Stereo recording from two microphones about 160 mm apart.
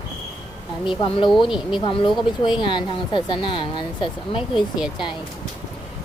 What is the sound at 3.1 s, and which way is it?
Speech, 30° left (ahead or behind).